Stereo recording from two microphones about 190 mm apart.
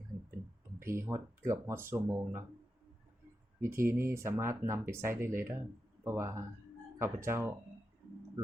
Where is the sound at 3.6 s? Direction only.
15° right (ahead or behind).